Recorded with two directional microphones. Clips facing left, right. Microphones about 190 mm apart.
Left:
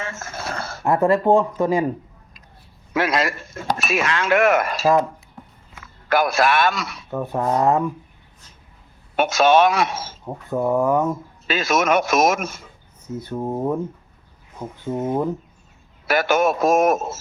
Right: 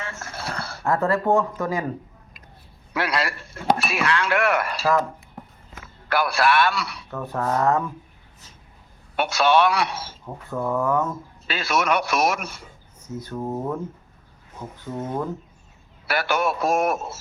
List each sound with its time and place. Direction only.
0.2 s a sound: 45° left (ahead or behind)
0.9 s speech: 15° left (ahead or behind)
2.9 s speech: 20° left (ahead or behind)
3.3 s speech: 45° left (ahead or behind)
3.8 s speech: 20° left (ahead or behind)
6.1 s speech: 20° left (ahead or behind)
9.1 s speech: 20° left (ahead or behind)
9.9 s speech: 45° left (ahead or behind)
10.2 s speech: 20° left (ahead or behind)
14.8 s speech: 20° left (ahead or behind)